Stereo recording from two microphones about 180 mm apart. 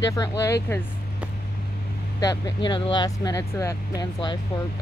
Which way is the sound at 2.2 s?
25° left (ahead or behind).